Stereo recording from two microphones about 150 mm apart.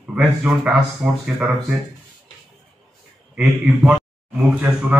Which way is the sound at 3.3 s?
5° right (ahead or behind).